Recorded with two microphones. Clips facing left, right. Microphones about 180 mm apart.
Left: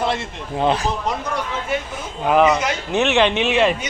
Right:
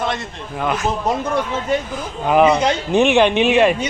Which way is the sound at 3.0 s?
15° right (ahead or behind).